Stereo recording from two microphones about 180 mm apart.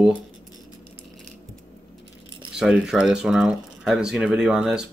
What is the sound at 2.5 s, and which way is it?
Speech, 5° right (ahead or behind).